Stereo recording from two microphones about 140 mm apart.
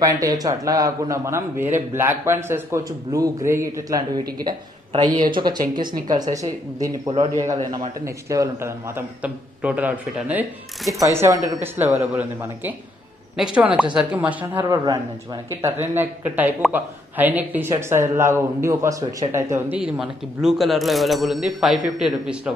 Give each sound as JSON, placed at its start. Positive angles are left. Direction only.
{"t": 0.0, "sound": "a man's voice", "side_deg": -25}
{"t": 10.9, "sound": "a man's voice", "side_deg": -20}
{"t": 14.6, "sound": "a man's voice", "side_deg": -25}
{"t": 19.8, "sound": "speech", "side_deg": -5}